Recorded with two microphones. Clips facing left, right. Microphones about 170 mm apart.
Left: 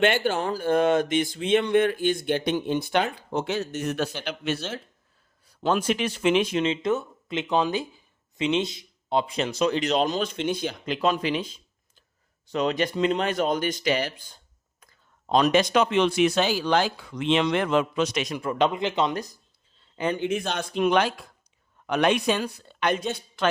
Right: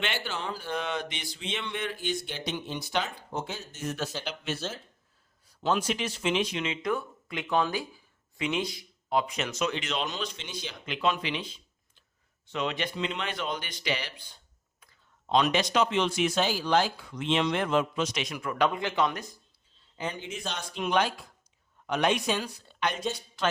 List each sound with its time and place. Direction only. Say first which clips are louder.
0.0 s speech: left 11 dB; 50° left (ahead or behind)
6.6 s speech: left 6 dB; 25° left (ahead or behind); by 10.8 s 50° left (ahead or behind)
10.8 s speech: left 4 dB; 40° left (ahead or behind); by 18.2 s 70° left (ahead or behind)
18.3 s speech: left 3 dB; 25° left (ahead or behind)
20.0 s speech: left 10 dB; 60° left (ahead or behind)